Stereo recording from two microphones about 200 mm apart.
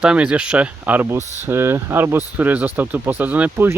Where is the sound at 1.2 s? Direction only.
35° right (ahead or behind).